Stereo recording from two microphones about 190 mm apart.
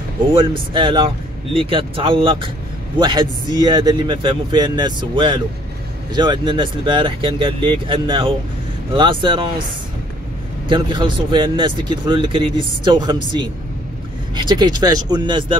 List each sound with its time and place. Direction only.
0.3 s a man's voice: 25° right (ahead or behind)
10.7 s a man's voice: 25° right (ahead or behind)